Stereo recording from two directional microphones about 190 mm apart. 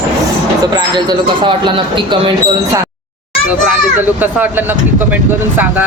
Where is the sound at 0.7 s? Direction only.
25° right (ahead or behind).